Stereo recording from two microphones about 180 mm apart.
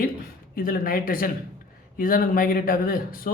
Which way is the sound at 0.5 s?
50° left (ahead or behind).